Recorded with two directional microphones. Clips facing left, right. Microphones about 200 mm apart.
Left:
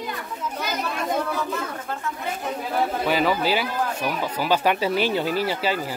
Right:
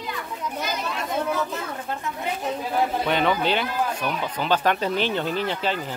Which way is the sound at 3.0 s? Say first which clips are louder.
Left 1 dB; 5° left (ahead or behind).